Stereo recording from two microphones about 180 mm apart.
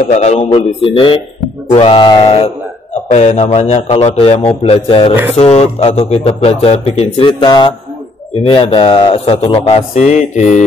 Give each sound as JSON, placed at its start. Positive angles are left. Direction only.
{"t": 0.1, "sound": "a man's voice", "side_deg": 35}